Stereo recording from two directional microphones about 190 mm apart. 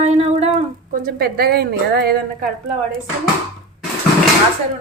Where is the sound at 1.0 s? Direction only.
50° right (ahead or behind).